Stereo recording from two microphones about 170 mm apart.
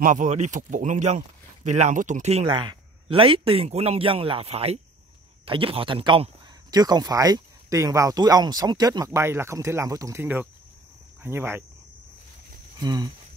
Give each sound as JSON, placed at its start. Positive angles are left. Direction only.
{"t": 0.0, "sound": "speech", "side_deg": -45}
{"t": 2.5, "sound": "speech", "side_deg": -25}
{"t": 12.7, "sound": "speech", "side_deg": -25}